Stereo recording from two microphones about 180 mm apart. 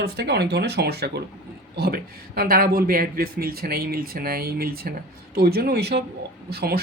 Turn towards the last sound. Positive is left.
turn(degrees=-60)  # may be behind; listen again after turning